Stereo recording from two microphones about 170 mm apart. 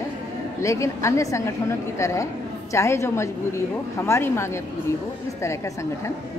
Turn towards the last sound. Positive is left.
turn(degrees=15)  # may be behind; listen again after turning